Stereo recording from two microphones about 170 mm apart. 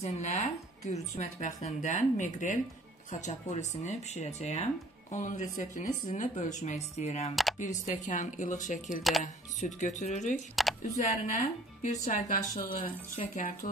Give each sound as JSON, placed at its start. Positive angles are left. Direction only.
{"t": 0.0, "sound": "speech", "side_deg": 40}
{"t": 10.5, "sound": "speech", "side_deg": 0}
{"t": 11.1, "sound": "speech", "side_deg": 45}